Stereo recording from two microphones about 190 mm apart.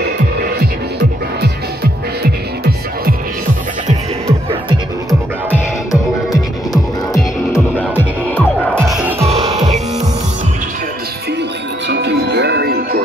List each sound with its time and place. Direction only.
0.9 s music: 60° right (ahead or behind)
5.5 s music: 15° left (ahead or behind)
7.9 s music: 10° left (ahead or behind)
8.8 s music: 5° right (ahead or behind)
11.9 s music: 60° right (ahead or behind)